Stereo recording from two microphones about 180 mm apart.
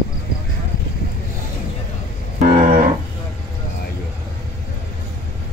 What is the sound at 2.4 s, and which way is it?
Cattle, 40° right (ahead or behind).